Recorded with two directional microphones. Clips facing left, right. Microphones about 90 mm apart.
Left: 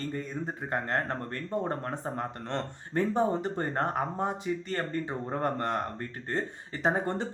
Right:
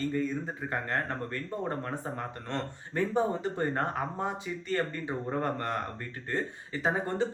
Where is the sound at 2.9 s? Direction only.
35° left (ahead or behind).